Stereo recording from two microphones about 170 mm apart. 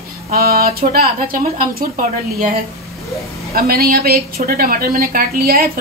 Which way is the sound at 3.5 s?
60° right (ahead or behind).